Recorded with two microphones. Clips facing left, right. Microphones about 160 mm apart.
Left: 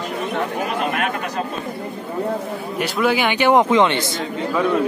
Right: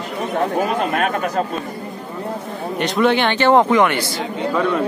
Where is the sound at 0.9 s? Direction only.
40° right (ahead or behind).